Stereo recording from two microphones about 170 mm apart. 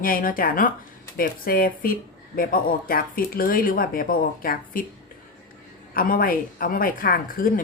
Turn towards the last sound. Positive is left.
turn(degrees=55)  # may be behind; listen again after turning